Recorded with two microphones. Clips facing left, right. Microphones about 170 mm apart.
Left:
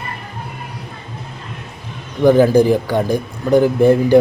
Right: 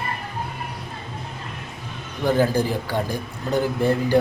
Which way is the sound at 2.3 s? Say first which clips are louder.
Left 9 dB; 15° left (ahead or behind).